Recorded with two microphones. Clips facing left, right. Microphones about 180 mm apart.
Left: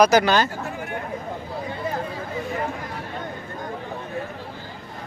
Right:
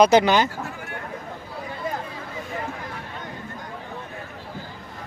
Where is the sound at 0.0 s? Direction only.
25° right (ahead or behind).